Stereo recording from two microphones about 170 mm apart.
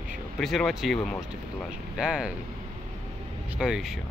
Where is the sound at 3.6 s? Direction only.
5° right (ahead or behind).